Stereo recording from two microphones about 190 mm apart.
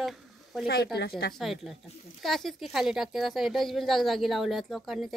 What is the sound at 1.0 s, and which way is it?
Speech, 55° left (ahead or behind).